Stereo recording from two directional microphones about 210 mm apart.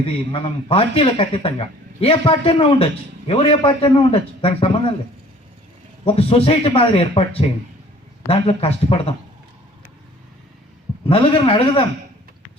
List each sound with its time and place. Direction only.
0.0 s speech: 25° left (ahead or behind)
6.1 s speech: 30° left (ahead or behind)
11.1 s speech: 25° left (ahead or behind)